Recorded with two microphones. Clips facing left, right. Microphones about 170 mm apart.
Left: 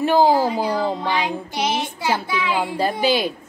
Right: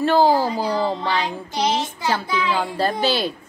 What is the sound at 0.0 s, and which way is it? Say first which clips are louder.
Female singing: left 1 dB; 15° left (ahead or behind).